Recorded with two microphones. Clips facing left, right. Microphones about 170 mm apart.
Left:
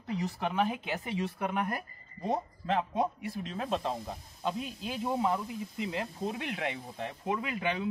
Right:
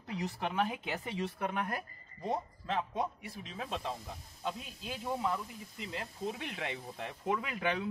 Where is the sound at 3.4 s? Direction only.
55° left (ahead or behind).